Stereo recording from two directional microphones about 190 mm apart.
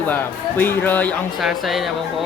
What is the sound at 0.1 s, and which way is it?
Speech, 10° left (ahead or behind).